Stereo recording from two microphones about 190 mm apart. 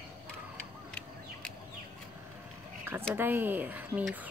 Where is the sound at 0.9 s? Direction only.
Centre (ahead or behind).